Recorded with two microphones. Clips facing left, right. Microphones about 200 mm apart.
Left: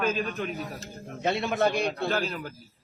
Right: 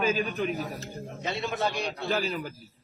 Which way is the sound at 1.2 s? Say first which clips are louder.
Left 5 dB; 55° left (ahead or behind).